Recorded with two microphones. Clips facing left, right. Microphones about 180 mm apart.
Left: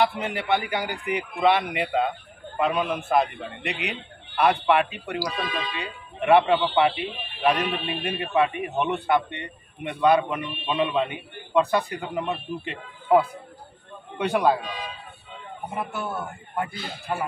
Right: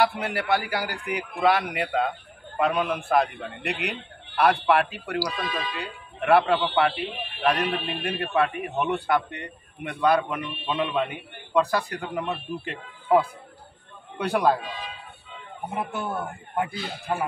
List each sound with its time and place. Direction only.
0.0 s a man's voice: 5° right (ahead or behind)
15.7 s a man's voice: 15° right (ahead or behind)